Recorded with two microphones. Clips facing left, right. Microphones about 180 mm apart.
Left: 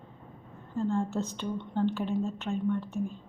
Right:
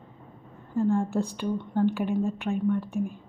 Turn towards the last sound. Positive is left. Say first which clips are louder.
# right 4 dB
turn(degrees=-15)  # may be behind; listen again after turning